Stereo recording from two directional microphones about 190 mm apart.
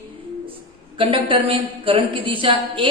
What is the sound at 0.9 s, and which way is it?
A woman's voice, 25° right (ahead or behind).